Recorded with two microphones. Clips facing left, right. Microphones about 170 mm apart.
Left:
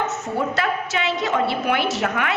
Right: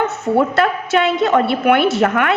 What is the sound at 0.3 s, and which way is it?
A woman's voice, 60° right (ahead or behind).